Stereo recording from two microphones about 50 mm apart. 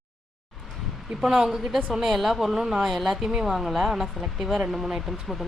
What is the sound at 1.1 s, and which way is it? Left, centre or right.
Speech, centre.